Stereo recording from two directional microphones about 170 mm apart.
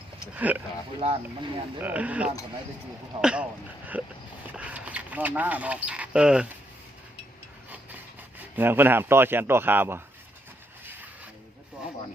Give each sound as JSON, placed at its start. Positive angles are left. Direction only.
{"t": 0.3, "sound": "speech", "side_deg": -10}
{"t": 0.9, "sound": "speech", "side_deg": -30}
{"t": 1.8, "sound": "speech", "side_deg": -10}
{"t": 8.5, "sound": "speech", "side_deg": -10}